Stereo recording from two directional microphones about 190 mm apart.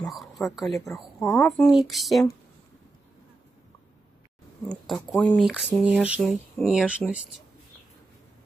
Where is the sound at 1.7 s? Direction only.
Centre (ahead or behind).